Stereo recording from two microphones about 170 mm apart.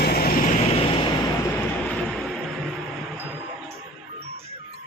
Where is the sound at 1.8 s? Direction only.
5° left (ahead or behind).